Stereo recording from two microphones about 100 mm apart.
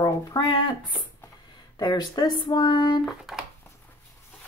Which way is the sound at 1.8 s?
45° left (ahead or behind).